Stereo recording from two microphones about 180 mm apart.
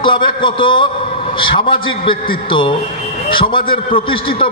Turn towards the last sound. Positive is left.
turn(degrees=30)  # may be behind; listen again after turning